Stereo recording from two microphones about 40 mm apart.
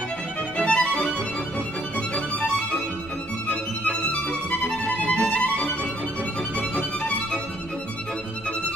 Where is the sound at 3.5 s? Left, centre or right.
Left.